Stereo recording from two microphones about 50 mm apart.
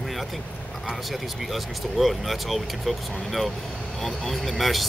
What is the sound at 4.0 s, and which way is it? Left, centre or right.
Speech, centre.